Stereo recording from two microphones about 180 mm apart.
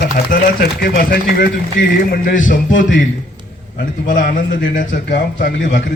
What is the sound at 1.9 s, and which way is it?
A man's voice, 50° left (ahead or behind).